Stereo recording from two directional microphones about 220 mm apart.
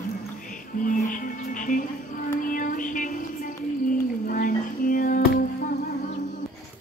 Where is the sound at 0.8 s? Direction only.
35° left (ahead or behind).